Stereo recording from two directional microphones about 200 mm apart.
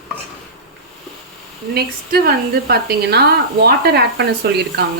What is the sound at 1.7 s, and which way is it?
A woman's voice, 50° right (ahead or behind).